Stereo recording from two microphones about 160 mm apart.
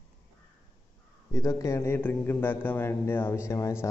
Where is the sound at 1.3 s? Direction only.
20° left (ahead or behind).